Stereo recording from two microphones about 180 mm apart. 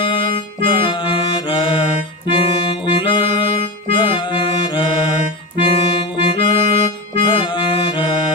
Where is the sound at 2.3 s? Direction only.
30° left (ahead or behind).